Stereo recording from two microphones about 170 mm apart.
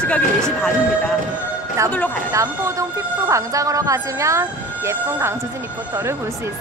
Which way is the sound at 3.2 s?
20° right (ahead or behind).